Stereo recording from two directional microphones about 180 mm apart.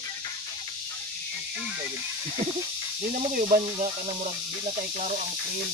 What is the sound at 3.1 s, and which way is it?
Speech, 40° right (ahead or behind).